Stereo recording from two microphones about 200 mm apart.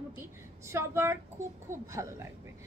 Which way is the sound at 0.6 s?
15° right (ahead or behind).